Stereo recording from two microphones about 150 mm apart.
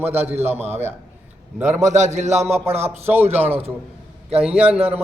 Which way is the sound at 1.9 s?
50° right (ahead or behind).